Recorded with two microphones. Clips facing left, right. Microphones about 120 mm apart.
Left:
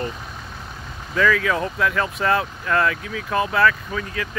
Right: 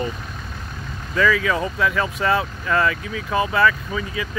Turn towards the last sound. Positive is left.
turn(degrees=-5)  # may be behind; listen again after turning